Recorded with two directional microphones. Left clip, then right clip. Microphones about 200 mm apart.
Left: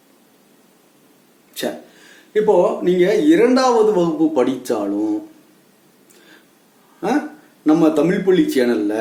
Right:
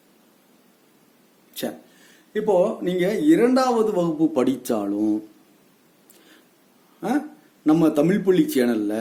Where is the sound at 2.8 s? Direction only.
55° right (ahead or behind).